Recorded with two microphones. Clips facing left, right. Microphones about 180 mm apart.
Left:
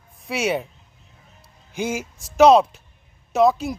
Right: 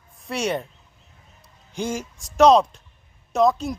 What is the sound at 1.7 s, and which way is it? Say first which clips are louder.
Speech: left 1 dB; 5° left (ahead or behind).